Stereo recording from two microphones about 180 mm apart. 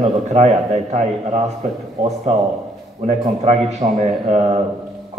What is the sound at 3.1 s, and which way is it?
A man's voice, 40° right (ahead or behind).